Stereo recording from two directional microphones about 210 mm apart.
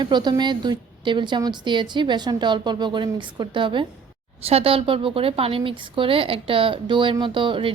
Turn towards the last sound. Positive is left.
turn(degrees=-25)  # may be behind; listen again after turning